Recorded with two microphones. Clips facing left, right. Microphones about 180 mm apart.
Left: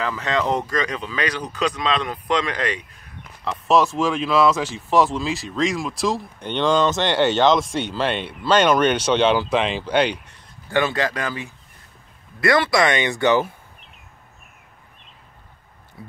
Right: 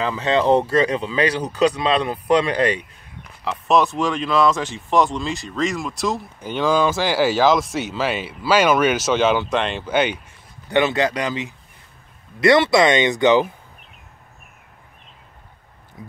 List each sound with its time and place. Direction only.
0.0 s speech: 25° right (ahead or behind)
3.4 s speech: centre (ahead or behind)
10.7 s speech: 20° right (ahead or behind)
16.0 s a sound: 15° right (ahead or behind)